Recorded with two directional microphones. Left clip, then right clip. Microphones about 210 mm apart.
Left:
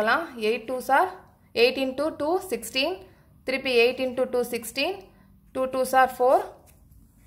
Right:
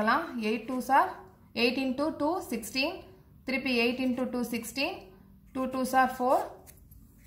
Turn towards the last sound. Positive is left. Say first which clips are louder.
# left 6 dB
turn(degrees=55)  # may be behind; listen again after turning